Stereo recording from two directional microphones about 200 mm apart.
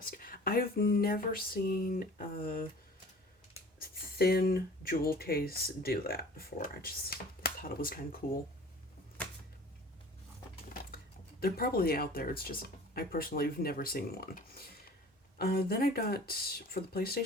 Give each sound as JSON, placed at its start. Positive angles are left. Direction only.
{"t": 0.0, "sound": "speech", "side_deg": 45}
{"t": 3.8, "sound": "speech", "side_deg": 50}
{"t": 10.7, "sound": "speech", "side_deg": 45}